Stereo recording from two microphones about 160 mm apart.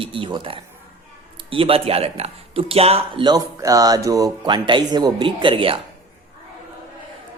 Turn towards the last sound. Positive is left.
turn(degrees=-35)  # may be behind; listen again after turning